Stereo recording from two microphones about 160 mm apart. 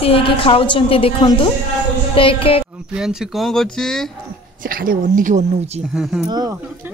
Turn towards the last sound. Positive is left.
turn(degrees=-25)  # may be behind; listen again after turning